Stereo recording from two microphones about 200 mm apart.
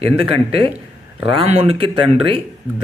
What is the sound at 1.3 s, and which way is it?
Speech, 30° right (ahead or behind).